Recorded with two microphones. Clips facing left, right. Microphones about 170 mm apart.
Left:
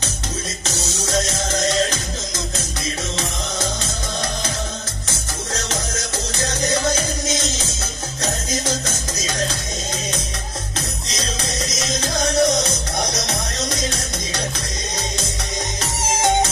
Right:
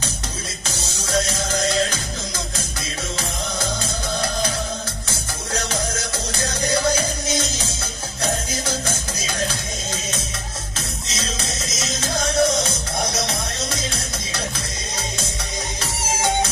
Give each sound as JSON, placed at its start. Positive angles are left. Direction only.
{"t": 6.9, "sound": "music", "side_deg": -30}
{"t": 11.1, "sound": "music", "side_deg": -25}